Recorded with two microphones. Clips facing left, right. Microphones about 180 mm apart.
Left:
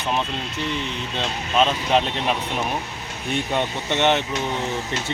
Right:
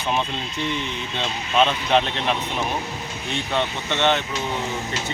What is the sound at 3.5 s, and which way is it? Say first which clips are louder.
Speech: right 1 dB; 15° left (ahead or behind).